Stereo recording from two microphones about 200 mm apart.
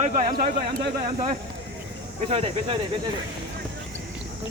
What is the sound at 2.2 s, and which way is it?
Speech, 30° right (ahead or behind).